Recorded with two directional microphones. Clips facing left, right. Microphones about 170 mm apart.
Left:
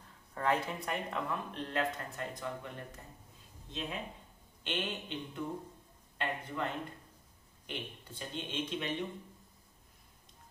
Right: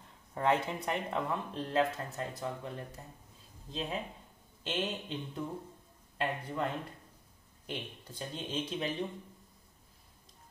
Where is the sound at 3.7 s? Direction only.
35° right (ahead or behind).